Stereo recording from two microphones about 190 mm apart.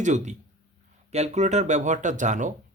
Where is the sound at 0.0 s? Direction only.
40° right (ahead or behind).